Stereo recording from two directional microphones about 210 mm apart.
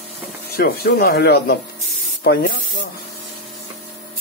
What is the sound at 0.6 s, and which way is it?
Speech, 45° left (ahead or behind).